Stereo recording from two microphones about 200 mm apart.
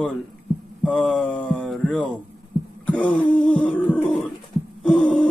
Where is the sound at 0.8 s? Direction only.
5° left (ahead or behind).